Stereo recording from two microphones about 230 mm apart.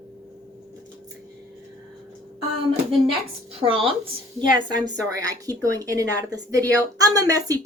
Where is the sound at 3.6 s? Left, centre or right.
Right.